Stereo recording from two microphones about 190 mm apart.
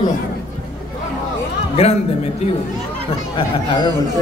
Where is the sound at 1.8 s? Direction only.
30° left (ahead or behind).